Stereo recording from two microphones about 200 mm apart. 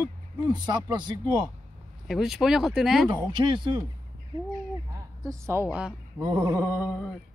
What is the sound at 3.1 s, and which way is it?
Speech, 25° right (ahead or behind).